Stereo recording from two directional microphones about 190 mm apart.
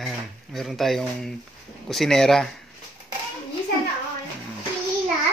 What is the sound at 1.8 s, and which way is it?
Speech, centre (ahead or behind).